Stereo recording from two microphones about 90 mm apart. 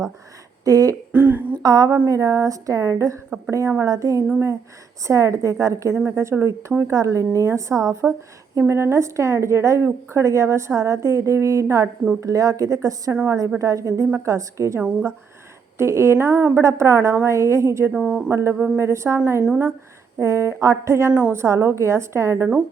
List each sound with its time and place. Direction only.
0.6 s speech: 40° right (ahead or behind)
1.1 s speech: 20° right (ahead or behind)
1.6 s a woman's voice: 45° right (ahead or behind)
3.2 s speech: 10° right (ahead or behind)
3.8 s a woman's voice: 35° right (ahead or behind)
15.8 s a woman's voice: 30° right (ahead or behind)
17.9 s speech: 10° right (ahead or behind)
18.3 s a woman's voice: 30° right (ahead or behind)
21.1 s speech: 15° right (ahead or behind)
21.3 s a woman's voice: 30° right (ahead or behind)